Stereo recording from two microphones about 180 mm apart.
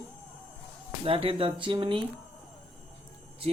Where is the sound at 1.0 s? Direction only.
30° right (ahead or behind).